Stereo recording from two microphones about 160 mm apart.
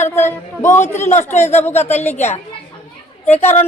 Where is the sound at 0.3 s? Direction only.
15° left (ahead or behind).